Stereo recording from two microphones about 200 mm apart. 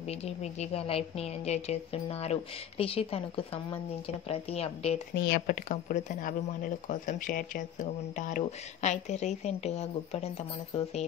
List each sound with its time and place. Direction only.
0.0 s speech: 30° left (ahead or behind)
5.1 s speech: 50° left (ahead or behind); by 10.4 s 30° left (ahead or behind)